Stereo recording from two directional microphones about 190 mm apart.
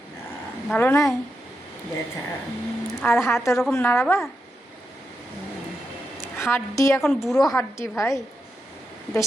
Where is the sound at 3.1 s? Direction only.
Centre (ahead or behind).